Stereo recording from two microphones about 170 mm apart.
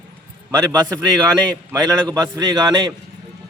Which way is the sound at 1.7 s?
20° right (ahead or behind).